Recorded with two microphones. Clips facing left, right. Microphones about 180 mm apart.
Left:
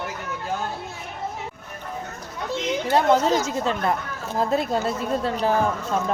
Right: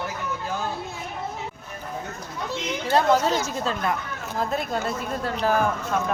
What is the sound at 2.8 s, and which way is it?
Speech, 20° left (ahead or behind).